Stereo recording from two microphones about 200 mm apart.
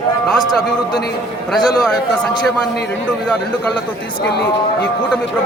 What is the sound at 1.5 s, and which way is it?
Speech, 20° left (ahead or behind).